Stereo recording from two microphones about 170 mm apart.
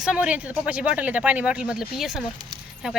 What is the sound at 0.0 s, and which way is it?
Speech, 5° right (ahead or behind).